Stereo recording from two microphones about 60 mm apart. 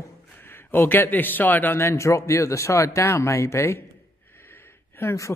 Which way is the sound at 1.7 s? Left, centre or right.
Left.